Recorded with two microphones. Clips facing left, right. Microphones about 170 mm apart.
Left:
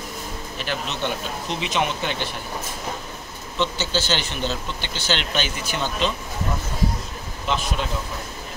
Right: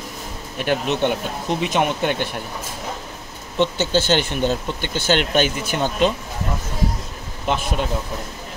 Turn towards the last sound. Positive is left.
turn(degrees=-55)  # may be behind; listen again after turning